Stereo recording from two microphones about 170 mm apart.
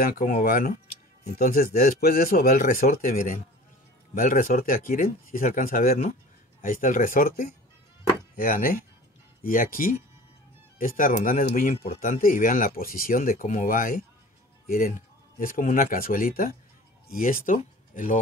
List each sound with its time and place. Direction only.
0.0 s a man's voice: 55° left (ahead or behind)